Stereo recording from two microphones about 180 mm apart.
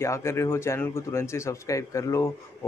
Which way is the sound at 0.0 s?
15° left (ahead or behind).